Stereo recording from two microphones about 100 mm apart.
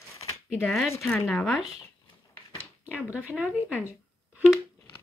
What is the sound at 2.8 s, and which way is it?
Speech, 15° right (ahead or behind).